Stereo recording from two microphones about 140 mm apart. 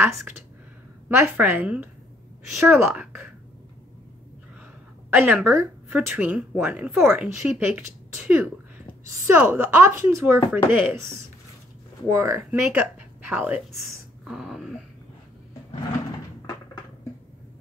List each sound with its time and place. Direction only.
0.0 s speech: 15° right (ahead or behind)
5.1 s speech: 15° right (ahead or behind)
12.2 s speech: 20° right (ahead or behind)
14.2 s speech: 5° right (ahead or behind)